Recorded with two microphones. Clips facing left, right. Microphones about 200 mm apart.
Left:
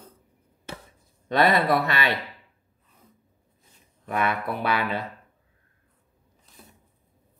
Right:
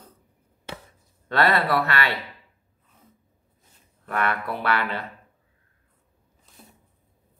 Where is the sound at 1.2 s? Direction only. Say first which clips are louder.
Left 1 dB; 20° left (ahead or behind).